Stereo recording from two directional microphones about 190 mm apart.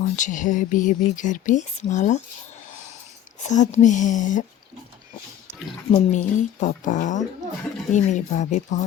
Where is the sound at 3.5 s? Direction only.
40° left (ahead or behind).